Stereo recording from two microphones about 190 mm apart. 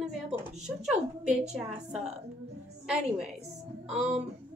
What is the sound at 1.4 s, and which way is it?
Speech, 35° right (ahead or behind).